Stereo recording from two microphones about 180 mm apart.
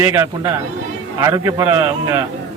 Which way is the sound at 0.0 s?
15° right (ahead or behind).